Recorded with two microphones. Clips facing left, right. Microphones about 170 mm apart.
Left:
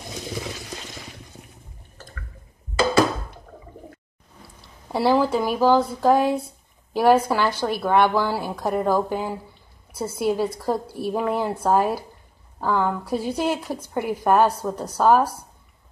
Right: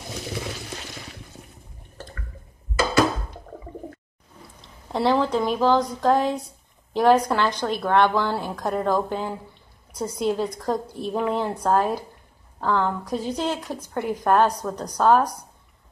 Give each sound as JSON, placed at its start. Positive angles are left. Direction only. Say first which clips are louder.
{"t": 2.7, "sound": "music", "louder": "left 2 dB", "side_deg": 30}
{"t": 4.9, "sound": "a woman's voice", "louder": "left 2 dB", "side_deg": 5}